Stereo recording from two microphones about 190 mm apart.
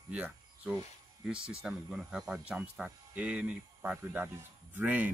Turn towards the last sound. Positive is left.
turn(degrees=-10)  # may be behind; listen again after turning